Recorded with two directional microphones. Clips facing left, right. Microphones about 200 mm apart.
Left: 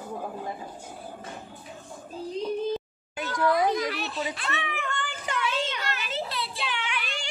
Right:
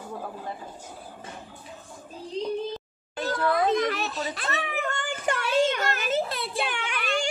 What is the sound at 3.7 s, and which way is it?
Speech, 45° right (ahead or behind).